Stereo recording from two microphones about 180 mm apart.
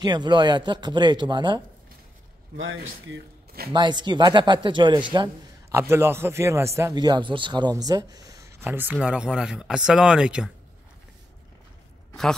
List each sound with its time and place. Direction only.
0.0 s a man's voice: 25° right (ahead or behind)
2.5 s a man's voice: 90° right; by 3.7 s 75° right (ahead or behind)
3.7 s a man's voice: 25° right (ahead or behind); by 10.5 s 5° right (ahead or behind)